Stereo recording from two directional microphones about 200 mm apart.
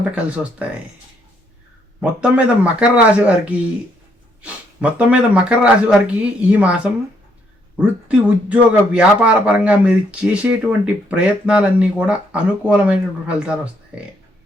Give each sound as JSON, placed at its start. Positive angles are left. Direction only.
{"t": 0.0, "sound": "speech", "side_deg": -5}
{"t": 2.0, "sound": "speech", "side_deg": -5}